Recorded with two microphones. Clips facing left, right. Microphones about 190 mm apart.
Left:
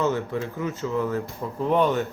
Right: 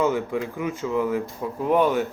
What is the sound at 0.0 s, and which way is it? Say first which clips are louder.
A man's voice: right 2 dB; 15° right (ahead or behind).